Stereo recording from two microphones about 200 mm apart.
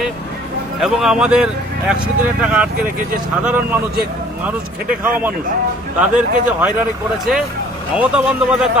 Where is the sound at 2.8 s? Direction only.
45° right (ahead or behind).